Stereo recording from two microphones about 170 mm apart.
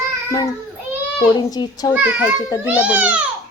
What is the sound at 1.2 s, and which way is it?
Speech, 25° left (ahead or behind).